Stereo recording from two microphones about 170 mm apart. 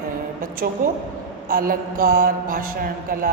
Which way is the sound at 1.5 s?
60° right (ahead or behind).